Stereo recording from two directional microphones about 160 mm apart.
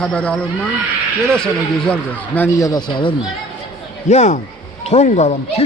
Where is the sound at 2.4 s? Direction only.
20° left (ahead or behind).